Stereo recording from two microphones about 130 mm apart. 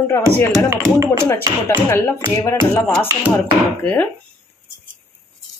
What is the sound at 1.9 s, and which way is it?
Speech, 20° left (ahead or behind).